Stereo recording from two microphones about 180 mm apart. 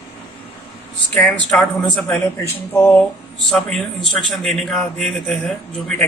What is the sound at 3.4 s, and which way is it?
A man's voice, centre (ahead or behind).